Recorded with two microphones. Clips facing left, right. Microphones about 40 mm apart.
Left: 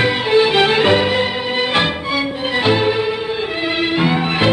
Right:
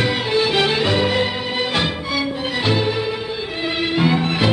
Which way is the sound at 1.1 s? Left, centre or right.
Centre.